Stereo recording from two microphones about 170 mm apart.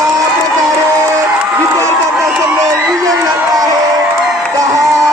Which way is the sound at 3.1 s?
20° right (ahead or behind).